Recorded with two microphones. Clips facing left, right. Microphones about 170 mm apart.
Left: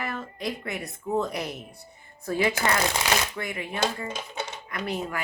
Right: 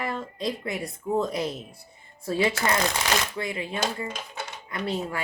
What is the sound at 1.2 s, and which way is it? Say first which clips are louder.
Speech: right 3 dB; 25° right (ahead or behind).